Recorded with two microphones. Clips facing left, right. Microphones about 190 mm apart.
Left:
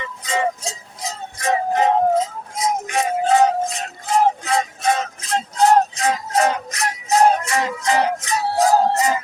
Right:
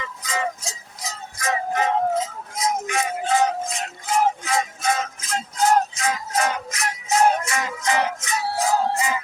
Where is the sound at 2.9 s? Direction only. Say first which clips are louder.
Left 8 dB; 35° left (ahead or behind).